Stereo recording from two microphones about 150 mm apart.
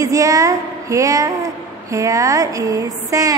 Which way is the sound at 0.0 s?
20° right (ahead or behind).